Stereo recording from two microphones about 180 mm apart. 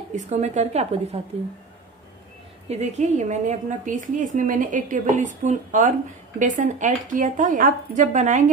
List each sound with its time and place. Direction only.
0.1 s speech: 40° right (ahead or behind)
2.7 s speech: 40° right (ahead or behind)